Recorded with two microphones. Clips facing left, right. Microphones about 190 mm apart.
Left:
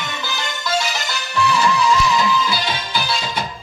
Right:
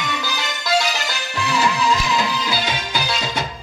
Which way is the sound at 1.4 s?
40° right (ahead or behind).